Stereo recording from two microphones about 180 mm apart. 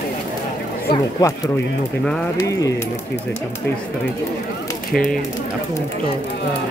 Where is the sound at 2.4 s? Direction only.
20° left (ahead or behind).